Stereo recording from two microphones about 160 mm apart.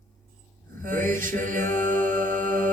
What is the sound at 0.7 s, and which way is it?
Music, 55° right (ahead or behind).